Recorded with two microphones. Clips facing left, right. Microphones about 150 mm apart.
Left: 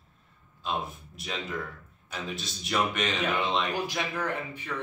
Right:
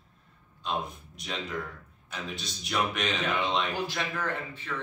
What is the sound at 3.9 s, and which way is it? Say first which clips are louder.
Speech: left 1 dB; 15° left (ahead or behind).